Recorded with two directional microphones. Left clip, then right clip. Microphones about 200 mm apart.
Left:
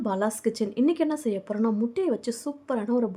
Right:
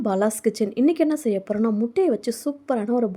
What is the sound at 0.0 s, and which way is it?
Speech, 20° right (ahead or behind).